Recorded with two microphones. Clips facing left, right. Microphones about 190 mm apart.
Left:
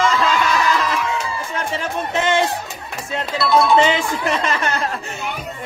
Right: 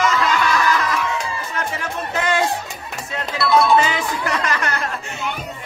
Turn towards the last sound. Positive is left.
turn(degrees=30)  # may be behind; listen again after turning